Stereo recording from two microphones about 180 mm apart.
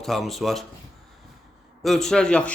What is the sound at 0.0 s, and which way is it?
Speech, centre (ahead or behind).